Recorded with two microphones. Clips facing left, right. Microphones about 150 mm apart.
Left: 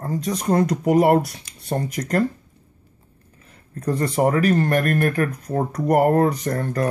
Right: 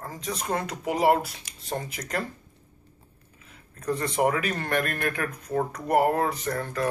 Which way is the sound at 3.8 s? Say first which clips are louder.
Left 5 dB; 35° left (ahead or behind).